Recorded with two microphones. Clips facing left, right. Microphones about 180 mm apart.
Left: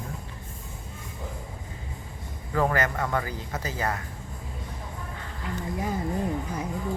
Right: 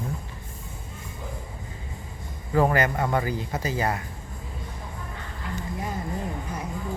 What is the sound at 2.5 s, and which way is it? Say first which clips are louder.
A man's voice: right 3 dB; 20° right (ahead or behind).